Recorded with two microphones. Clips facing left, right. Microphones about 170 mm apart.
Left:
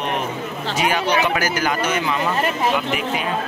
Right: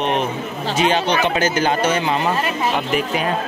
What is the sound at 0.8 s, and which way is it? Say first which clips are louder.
Speech: right 2 dB; 25° right (ahead or behind).